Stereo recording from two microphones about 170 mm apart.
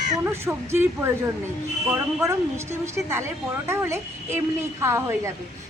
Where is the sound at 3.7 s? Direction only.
15° right (ahead or behind).